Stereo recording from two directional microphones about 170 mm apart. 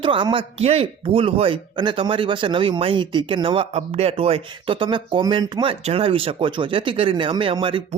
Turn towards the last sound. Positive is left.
turn(degrees=-30)  # may be behind; listen again after turning